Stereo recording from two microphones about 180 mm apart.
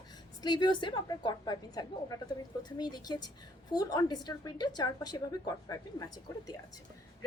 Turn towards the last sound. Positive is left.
turn(degrees=20)  # may be behind; listen again after turning